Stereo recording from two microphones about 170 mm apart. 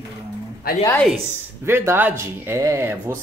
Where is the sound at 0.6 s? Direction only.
65° left (ahead or behind).